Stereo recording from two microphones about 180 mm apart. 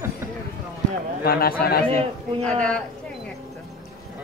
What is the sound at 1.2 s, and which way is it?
Speech, 55° left (ahead or behind).